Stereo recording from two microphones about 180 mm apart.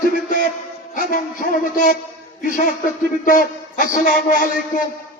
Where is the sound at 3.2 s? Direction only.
50° left (ahead or behind).